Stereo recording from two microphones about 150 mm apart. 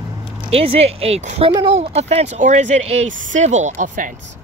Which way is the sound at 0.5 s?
40° right (ahead or behind).